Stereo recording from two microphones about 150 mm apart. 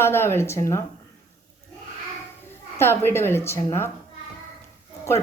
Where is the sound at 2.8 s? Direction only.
15° left (ahead or behind).